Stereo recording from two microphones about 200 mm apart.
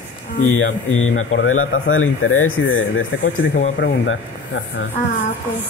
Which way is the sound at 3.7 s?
60° left (ahead or behind).